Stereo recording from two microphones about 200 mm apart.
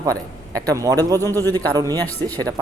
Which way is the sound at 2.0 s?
10° left (ahead or behind).